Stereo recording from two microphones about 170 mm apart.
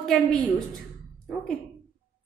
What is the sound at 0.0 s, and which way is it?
Speech, centre (ahead or behind).